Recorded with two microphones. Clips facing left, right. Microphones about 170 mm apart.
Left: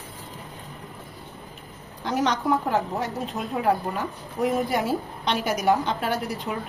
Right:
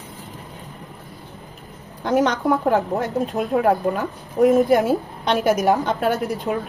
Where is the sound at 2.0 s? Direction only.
50° right (ahead or behind).